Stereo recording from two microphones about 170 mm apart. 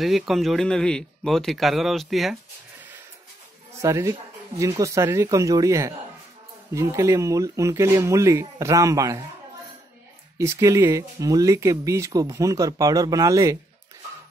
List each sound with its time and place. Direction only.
0.0 s speech: centre (ahead or behind)
3.8 s speech: 20° right (ahead or behind)
10.3 s speech: 15° right (ahead or behind)